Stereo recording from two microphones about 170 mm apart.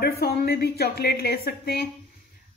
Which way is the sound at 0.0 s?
65° left (ahead or behind).